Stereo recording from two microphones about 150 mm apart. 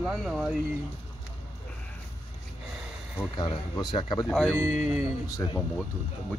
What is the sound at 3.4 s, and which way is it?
Speech, 30° left (ahead or behind).